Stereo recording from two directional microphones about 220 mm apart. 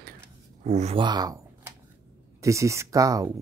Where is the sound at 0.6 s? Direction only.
30° right (ahead or behind); by 1.4 s 15° right (ahead or behind).